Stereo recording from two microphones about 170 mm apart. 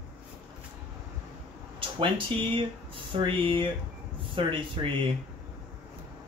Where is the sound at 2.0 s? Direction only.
30° right (ahead or behind).